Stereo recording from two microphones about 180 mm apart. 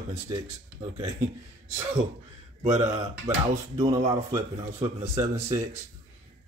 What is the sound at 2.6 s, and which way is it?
Speech, 35° right (ahead or behind).